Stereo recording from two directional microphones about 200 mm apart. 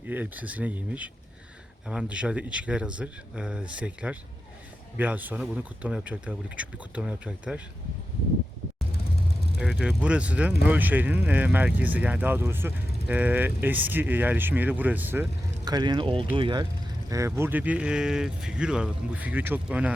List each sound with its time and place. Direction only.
0.1 s speech: 10° right (ahead or behind)
9.6 s speech: 5° right (ahead or behind)
15.6 s speech: 20° right (ahead or behind)